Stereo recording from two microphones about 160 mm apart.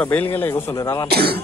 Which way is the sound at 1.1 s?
80° right.